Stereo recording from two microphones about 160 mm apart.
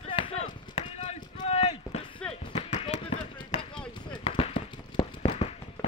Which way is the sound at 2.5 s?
40° left (ahead or behind).